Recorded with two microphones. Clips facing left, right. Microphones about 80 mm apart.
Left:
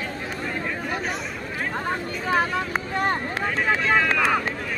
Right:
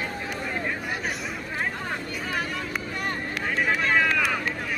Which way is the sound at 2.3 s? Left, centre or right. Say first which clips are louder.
Left 9 dB; left.